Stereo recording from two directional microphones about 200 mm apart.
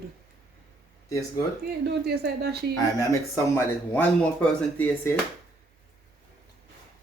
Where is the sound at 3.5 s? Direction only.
10° left (ahead or behind).